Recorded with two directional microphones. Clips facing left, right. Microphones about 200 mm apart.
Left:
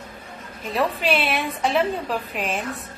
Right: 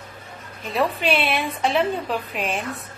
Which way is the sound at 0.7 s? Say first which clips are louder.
Right 1 dB; centre (ahead or behind).